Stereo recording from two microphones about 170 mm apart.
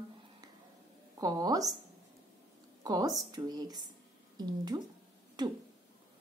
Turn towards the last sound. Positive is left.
turn(degrees=-25)  # may be behind; listen again after turning